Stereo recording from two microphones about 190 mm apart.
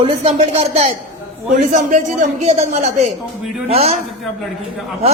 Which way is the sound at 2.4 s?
35° right (ahead or behind).